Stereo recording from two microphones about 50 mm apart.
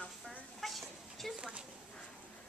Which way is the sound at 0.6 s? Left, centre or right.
Centre.